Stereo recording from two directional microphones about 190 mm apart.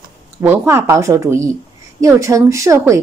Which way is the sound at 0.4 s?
10° right (ahead or behind).